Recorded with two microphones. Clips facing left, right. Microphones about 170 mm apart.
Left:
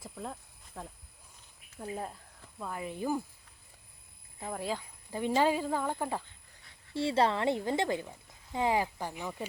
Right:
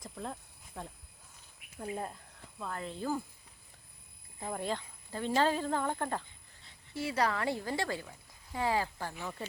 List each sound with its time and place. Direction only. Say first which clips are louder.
0.0 s speech: even; centre (ahead or behind)
4.4 s speech: even; centre (ahead or behind)
6.9 s a woman's voice: left 4 dB; 30° left (ahead or behind)